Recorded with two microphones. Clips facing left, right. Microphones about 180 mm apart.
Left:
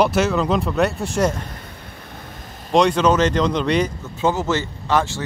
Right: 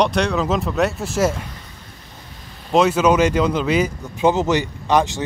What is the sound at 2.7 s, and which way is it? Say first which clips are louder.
Speech: right 1 dB; 5° right (ahead or behind).